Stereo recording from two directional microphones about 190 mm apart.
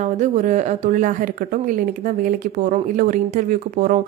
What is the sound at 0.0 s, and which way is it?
A woman's voice, 40° right (ahead or behind).